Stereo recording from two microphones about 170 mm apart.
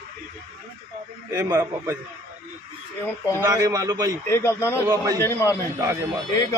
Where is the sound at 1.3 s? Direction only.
20° right (ahead or behind).